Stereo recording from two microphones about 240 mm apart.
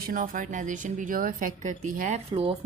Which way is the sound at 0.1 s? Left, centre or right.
Right.